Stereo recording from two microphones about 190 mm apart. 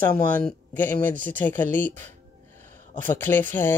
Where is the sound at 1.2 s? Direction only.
10° left (ahead or behind).